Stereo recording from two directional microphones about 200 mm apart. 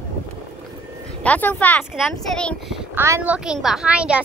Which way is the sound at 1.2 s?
5° left (ahead or behind).